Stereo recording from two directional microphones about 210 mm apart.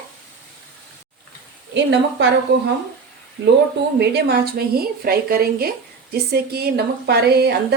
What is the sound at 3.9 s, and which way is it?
A woman's voice, 50° right (ahead or behind).